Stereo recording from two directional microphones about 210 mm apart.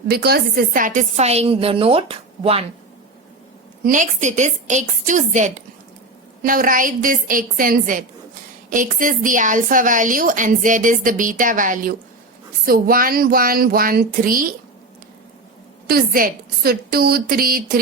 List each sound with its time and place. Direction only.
0.1 s speech: 50° right (ahead or behind); by 2.6 s 25° right (ahead or behind)
3.8 s a woman's voice: 35° right (ahead or behind)
15.9 s a woman's voice: 45° right (ahead or behind)